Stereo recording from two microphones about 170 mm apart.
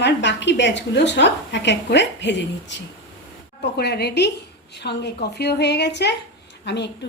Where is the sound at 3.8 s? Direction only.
70° left (ahead or behind).